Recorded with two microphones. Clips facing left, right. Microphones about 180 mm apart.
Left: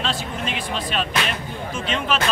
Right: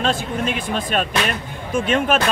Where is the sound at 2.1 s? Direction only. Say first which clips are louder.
Right 3 dB; 50° right (ahead or behind).